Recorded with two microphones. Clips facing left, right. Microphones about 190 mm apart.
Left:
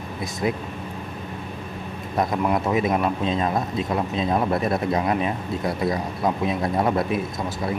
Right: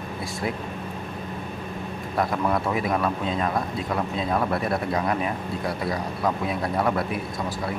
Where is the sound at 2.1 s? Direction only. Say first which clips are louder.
Left 2 dB; 20° left (ahead or behind).